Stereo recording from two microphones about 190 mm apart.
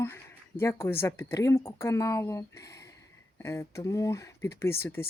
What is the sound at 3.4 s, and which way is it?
Speech, 15° left (ahead or behind).